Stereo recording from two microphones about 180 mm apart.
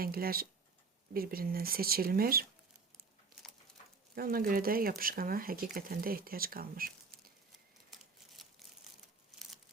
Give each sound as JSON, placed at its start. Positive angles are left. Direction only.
{"t": 0.0, "sound": "speech", "side_deg": -55}
{"t": 4.1, "sound": "speech", "side_deg": -55}
{"t": 7.9, "sound": "a sound", "side_deg": 0}